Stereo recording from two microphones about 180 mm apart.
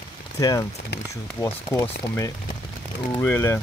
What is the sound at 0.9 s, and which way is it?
Speech, 65° left (ahead or behind).